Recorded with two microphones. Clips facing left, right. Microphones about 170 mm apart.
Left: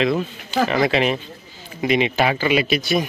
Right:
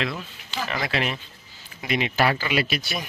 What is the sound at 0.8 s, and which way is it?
Speech, 20° left (ahead or behind).